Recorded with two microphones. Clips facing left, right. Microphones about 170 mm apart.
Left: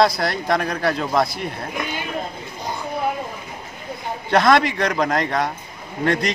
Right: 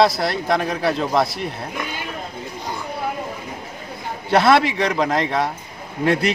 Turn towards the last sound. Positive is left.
turn(degrees=-5)  # may be behind; listen again after turning